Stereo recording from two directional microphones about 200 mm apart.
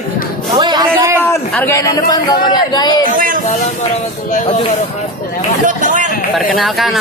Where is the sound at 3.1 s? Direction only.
45° right (ahead or behind).